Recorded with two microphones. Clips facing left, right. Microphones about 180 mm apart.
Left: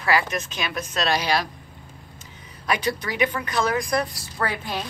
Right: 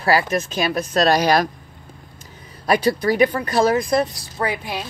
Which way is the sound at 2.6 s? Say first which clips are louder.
Right 8 dB; 35° right (ahead or behind).